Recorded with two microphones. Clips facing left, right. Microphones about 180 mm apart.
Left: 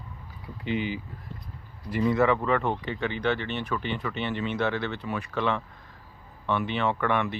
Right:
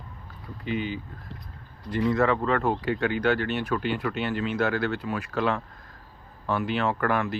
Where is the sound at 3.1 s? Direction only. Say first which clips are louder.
Right 3 dB; 5° right (ahead or behind).